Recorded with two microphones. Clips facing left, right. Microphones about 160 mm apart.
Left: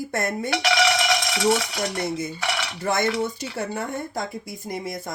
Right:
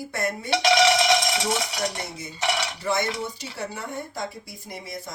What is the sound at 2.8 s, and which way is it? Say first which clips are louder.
Speech: left 5 dB; 50° left (ahead or behind).